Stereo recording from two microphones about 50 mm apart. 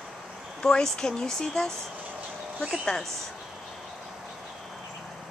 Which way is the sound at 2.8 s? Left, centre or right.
Centre.